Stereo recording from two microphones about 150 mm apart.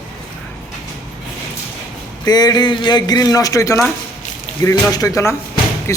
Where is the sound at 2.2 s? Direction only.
25° left (ahead or behind).